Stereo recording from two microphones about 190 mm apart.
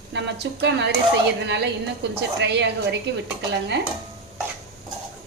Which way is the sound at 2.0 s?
65° right (ahead or behind).